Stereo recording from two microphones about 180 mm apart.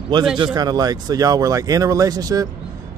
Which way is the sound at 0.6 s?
20° right (ahead or behind).